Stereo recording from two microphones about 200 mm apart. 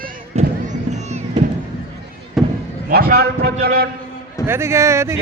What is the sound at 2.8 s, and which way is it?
A man's voice, 50° right (ahead or behind).